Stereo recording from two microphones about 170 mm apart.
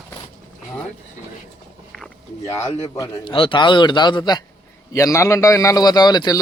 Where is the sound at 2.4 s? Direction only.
20° left (ahead or behind).